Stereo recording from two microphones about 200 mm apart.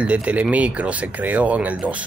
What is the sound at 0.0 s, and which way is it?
Speech, 5° right (ahead or behind).